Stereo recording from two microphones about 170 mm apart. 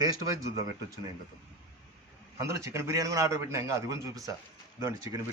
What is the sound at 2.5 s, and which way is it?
A man's voice, 15° right (ahead or behind).